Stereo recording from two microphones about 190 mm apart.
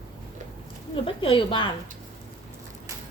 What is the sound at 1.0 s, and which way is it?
Speech, 30° left (ahead or behind).